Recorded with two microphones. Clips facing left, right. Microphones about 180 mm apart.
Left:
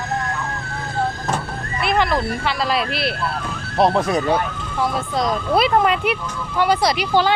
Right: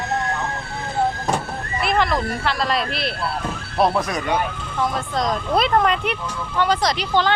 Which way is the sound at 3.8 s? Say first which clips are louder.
Left 3 dB; 25° left (ahead or behind).